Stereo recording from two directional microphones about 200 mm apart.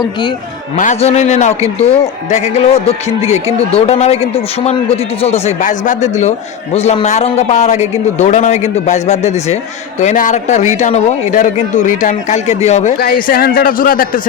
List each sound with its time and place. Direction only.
0.8 s a man's voice: 35° left (ahead or behind)
13.0 s a man's voice: 45° left (ahead or behind)